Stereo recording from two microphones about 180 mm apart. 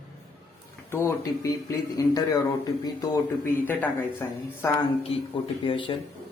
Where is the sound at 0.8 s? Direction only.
15° left (ahead or behind).